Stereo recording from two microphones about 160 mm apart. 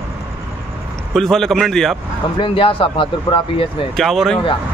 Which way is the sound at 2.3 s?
30° left (ahead or behind).